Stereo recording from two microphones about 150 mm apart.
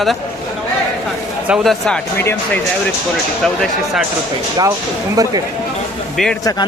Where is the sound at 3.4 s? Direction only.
5° left (ahead or behind).